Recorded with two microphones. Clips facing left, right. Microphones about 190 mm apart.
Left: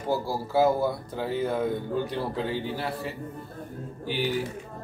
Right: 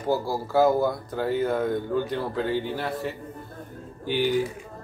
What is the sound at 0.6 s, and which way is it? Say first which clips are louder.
Speech: right 2 dB; 5° left (ahead or behind).